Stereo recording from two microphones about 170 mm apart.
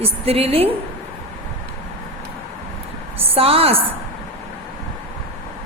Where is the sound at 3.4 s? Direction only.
35° right (ahead or behind).